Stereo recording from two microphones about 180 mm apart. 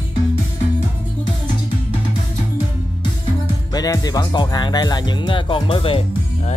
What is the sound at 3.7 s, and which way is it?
Speech, 20° left (ahead or behind).